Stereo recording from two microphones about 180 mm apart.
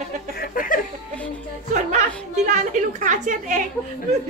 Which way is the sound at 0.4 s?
50° left (ahead or behind).